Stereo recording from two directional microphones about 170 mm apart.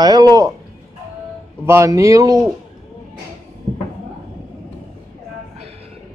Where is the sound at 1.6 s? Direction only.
15° right (ahead or behind).